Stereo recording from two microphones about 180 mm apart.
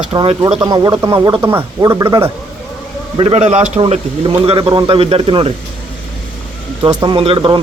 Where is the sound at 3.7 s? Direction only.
30° right (ahead or behind).